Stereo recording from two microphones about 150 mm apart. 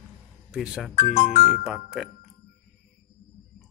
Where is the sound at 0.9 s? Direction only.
55° left (ahead or behind).